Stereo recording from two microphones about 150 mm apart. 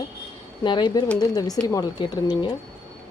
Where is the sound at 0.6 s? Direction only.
30° left (ahead or behind).